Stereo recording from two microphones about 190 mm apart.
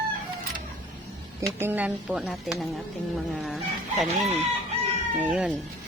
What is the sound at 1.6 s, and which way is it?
A woman's voice, 10° right (ahead or behind).